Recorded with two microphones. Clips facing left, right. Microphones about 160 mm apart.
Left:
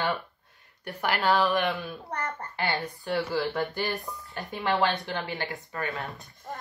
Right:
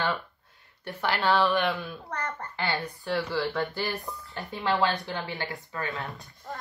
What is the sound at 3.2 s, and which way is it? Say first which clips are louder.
A woman's voice: left 1 dB; 10° left (ahead or behind).